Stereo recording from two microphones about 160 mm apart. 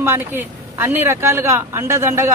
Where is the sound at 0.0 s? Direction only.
15° right (ahead or behind).